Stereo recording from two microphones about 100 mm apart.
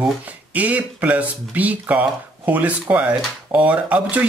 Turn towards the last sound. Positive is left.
turn(degrees=-15)  # may be behind; listen again after turning